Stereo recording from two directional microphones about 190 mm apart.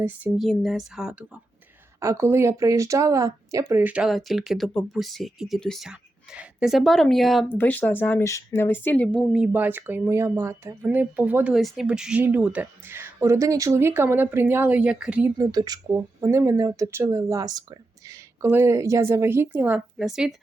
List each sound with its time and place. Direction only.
0.0 s speech: 5° right (ahead or behind)
2.0 s speech: 15° right (ahead or behind); by 9.2 s 10° left (ahead or behind)
9.3 s speech: 5° right (ahead or behind)
15.4 s speech: 20° right (ahead or behind); by 20.3 s 5° right (ahead or behind)